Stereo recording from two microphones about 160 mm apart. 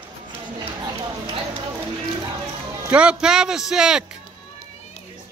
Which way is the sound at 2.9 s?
5° right (ahead or behind).